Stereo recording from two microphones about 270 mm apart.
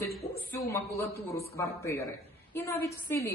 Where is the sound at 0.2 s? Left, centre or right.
Left.